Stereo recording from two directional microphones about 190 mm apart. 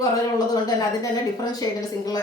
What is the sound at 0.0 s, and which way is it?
A woman's voice, 20° left (ahead or behind).